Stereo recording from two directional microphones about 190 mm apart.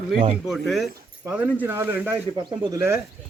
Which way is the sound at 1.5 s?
10° right (ahead or behind).